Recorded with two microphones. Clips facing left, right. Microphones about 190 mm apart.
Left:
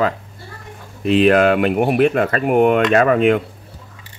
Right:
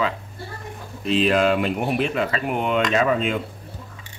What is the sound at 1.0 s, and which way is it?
Speech, 60° left (ahead or behind).